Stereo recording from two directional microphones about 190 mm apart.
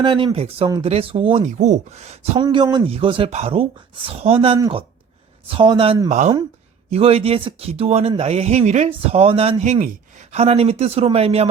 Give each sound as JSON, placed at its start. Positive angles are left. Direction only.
{"t": 0.0, "sound": "speech", "side_deg": -25}
{"t": 2.4, "sound": "speech", "side_deg": -25}